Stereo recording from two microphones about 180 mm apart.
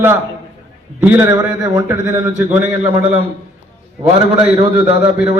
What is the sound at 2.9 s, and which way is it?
Speech, 30° right (ahead or behind).